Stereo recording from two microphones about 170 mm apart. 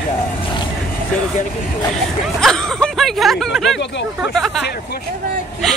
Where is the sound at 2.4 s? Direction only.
Centre (ahead or behind).